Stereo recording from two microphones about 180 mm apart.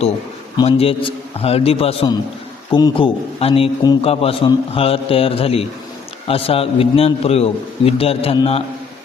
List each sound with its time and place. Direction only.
0.5 s a man's voice: 30° left (ahead or behind)